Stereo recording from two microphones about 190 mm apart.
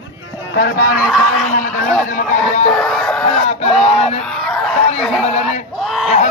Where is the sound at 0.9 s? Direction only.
5° right (ahead or behind).